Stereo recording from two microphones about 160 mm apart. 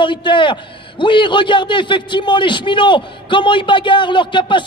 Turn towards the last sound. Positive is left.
turn(degrees=30)  # may be behind; listen again after turning